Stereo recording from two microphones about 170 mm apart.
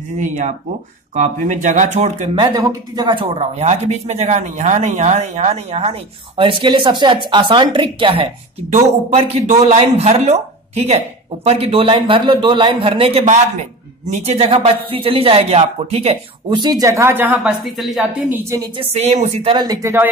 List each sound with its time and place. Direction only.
1.1 s speech: 45° right (ahead or behind)
2.3 s speech: 25° right (ahead or behind); by 18.0 s centre (ahead or behind)
18.8 s speech: 40° right (ahead or behind)
19.5 s speech: 25° right (ahead or behind)